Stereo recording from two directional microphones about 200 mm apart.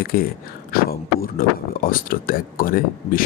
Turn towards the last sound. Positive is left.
turn(degrees=45)  # may be behind; listen again after turning